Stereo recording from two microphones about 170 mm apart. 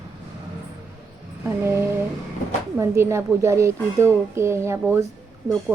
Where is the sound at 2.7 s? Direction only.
15° right (ahead or behind).